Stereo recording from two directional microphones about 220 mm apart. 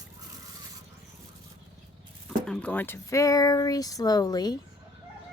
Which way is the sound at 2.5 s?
5° left (ahead or behind).